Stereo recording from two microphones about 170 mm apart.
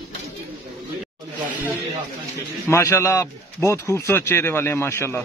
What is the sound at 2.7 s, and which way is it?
Speech, 15° left (ahead or behind).